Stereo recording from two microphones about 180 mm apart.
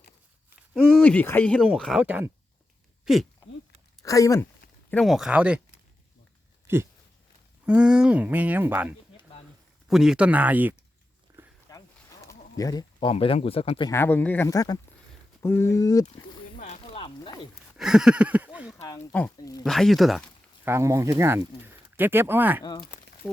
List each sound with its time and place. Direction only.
0.7 s speech: centre (ahead or behind)
4.0 s speech: 20° left (ahead or behind)
4.9 s speech: centre (ahead or behind)
6.7 s a sound: 10° right (ahead or behind)
7.6 s speech: 5° right (ahead or behind)
11.7 s a sound: 20° left (ahead or behind)
12.3 s speech: 20° left (ahead or behind)
13.9 s speech: 10° left (ahead or behind)
16.6 s a sound: 40° left (ahead or behind)
17.7 s a sound: 5° right (ahead or behind)
18.8 s speech: 15° left (ahead or behind)
19.6 s speech: centre (ahead or behind)
20.7 s speech: 15° right (ahead or behind)